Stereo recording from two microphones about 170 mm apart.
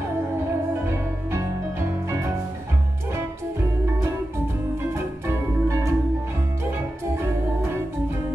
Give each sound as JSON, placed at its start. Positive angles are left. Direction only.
{"t": 0.8, "sound": "music", "side_deg": -15}
{"t": 5.2, "sound": "organ", "side_deg": -15}